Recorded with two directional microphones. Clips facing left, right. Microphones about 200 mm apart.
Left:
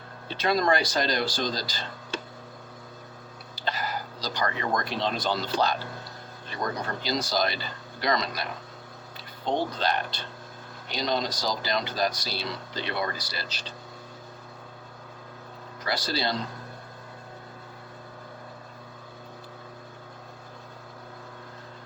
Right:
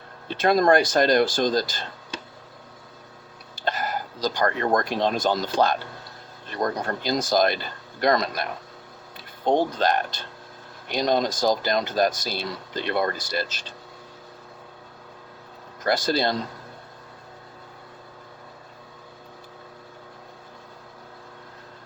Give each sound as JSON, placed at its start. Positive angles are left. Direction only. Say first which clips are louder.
{"t": 0.3, "sound": "speech", "louder": "right 6 dB", "side_deg": -50}
{"t": 3.5, "sound": "speech", "louder": "right 4 dB", "side_deg": -50}
{"t": 15.8, "sound": "speech", "louder": "right 7 dB", "side_deg": -50}